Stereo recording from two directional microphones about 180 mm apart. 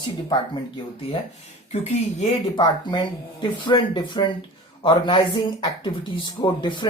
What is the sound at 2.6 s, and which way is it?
Speech, 25° left (ahead or behind).